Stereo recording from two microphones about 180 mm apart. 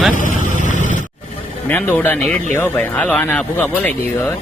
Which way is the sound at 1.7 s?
10° left (ahead or behind).